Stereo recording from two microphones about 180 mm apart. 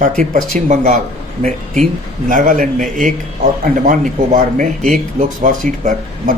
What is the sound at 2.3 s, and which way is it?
Speech, 50° right (ahead or behind).